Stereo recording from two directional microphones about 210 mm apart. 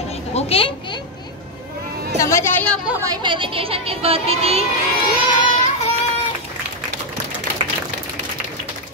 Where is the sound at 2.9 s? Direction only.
15° right (ahead or behind).